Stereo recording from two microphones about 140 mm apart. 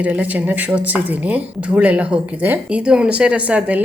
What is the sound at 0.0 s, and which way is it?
Speech, 10° right (ahead or behind).